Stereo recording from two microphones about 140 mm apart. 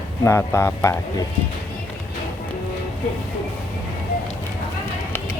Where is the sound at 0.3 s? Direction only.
15° left (ahead or behind).